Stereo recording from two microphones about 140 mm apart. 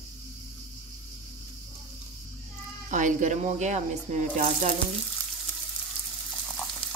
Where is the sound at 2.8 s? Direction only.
65° right (ahead or behind).